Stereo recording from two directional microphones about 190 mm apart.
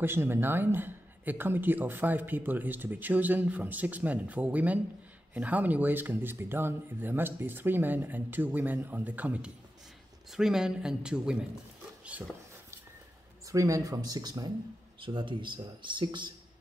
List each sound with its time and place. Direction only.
0.0 s speech: 10° right (ahead or behind)
13.5 s speech: 15° right (ahead or behind)